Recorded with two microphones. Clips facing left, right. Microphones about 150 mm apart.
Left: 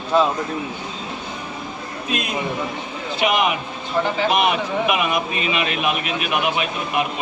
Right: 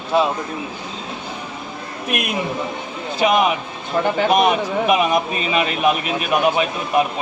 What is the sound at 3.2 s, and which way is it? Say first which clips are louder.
A man's voice: right 3 dB; 35° right (ahead or behind).